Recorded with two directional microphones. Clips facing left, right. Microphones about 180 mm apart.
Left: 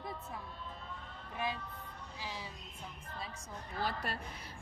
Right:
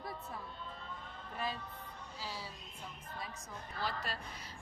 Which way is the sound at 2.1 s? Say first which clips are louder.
Even; 15° left (ahead or behind).